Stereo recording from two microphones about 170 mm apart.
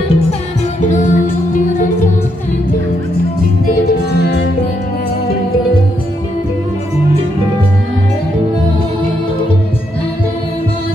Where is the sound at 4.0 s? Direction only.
75° left (ahead or behind).